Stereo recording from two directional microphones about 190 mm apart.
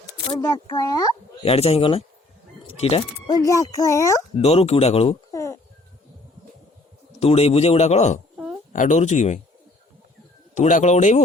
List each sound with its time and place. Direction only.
0.3 s speech: 20° left (ahead or behind)
1.5 s a man's voice: 30° left (ahead or behind)
3.3 s a child's voice: 15° left (ahead or behind)
4.4 s a man's voice: 30° left (ahead or behind)
5.3 s a sound: 15° left (ahead or behind)
7.2 s a man's voice: 30° left (ahead or behind)
10.5 s a man's voice: 40° left (ahead or behind)